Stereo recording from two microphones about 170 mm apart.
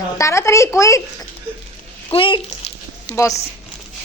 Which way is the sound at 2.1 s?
30° left (ahead or behind).